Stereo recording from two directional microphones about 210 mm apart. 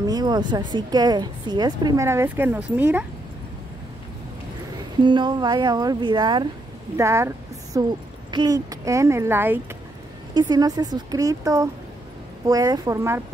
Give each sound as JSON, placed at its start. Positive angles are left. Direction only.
{"t": 0.0, "sound": "a woman's voice", "side_deg": -20}
{"t": 5.0, "sound": "a woman's voice", "side_deg": -20}